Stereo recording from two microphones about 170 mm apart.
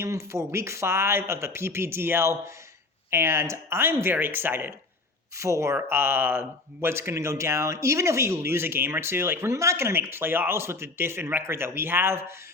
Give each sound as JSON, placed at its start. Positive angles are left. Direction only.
{"t": 0.0, "sound": "speech", "side_deg": -15}